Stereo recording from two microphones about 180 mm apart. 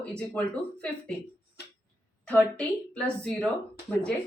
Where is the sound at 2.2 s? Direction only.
5° left (ahead or behind).